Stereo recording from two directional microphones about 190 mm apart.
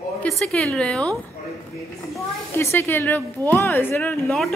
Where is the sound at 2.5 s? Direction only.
10° left (ahead or behind).